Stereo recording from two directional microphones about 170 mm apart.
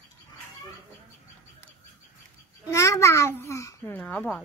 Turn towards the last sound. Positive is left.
turn(degrees=5)  # may be behind; listen again after turning